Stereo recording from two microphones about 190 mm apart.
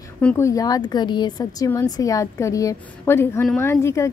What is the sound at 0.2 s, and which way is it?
Speech, 10° left (ahead or behind).